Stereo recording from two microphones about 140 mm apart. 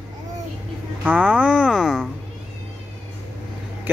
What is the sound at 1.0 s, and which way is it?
Speech, 10° right (ahead or behind).